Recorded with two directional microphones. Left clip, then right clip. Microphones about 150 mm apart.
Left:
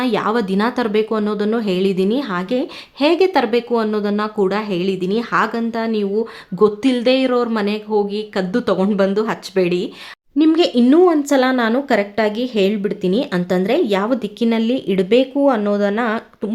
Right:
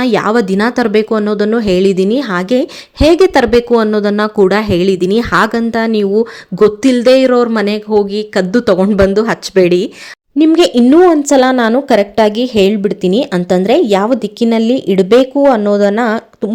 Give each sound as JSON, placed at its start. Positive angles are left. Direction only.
{"t": 0.0, "sound": "speech", "side_deg": -40}